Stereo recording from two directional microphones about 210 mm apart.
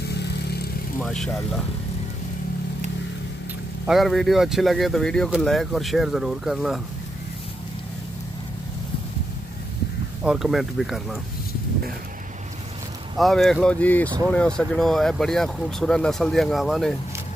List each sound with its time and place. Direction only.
0.0 s vehicle: 50° left (ahead or behind)
1.0 s speech: centre (ahead or behind)
3.8 s speech: centre (ahead or behind)
10.2 s speech: 5° right (ahead or behind)
13.2 s speech: centre (ahead or behind)